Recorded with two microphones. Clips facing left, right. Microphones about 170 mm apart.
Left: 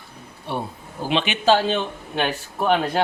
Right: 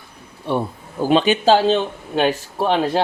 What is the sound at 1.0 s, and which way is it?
Speech, 40° right (ahead or behind).